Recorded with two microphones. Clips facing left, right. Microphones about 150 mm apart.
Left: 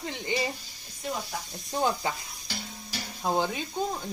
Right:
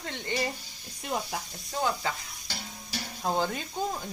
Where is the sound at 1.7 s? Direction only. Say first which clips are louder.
Left 2 dB; 20° left (ahead or behind).